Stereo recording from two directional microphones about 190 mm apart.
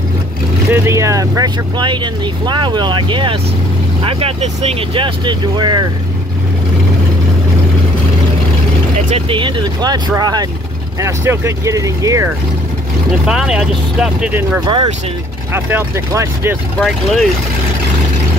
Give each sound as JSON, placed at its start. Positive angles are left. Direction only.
{"t": 0.7, "sound": "speech", "side_deg": -15}
{"t": 9.1, "sound": "speech", "side_deg": -25}
{"t": 13.3, "sound": "speech", "side_deg": -5}
{"t": 16.8, "sound": "speech", "side_deg": 0}